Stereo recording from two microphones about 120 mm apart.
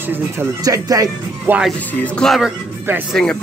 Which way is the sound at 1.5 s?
15° right (ahead or behind).